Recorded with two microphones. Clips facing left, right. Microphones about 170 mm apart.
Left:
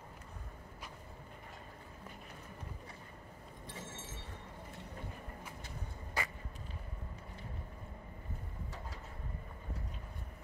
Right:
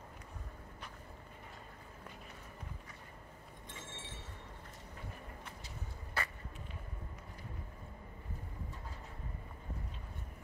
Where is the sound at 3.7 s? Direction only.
40° left (ahead or behind).